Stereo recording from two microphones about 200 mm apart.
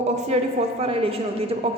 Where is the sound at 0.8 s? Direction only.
30° right (ahead or behind).